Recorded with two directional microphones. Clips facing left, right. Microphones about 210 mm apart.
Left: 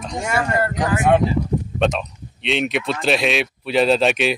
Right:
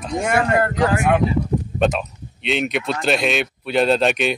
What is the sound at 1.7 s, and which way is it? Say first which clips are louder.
A man's voice: right 1 dB; 5° right (ahead or behind).